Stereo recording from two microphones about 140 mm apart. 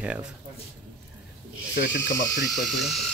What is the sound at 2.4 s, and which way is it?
Speech, centre (ahead or behind).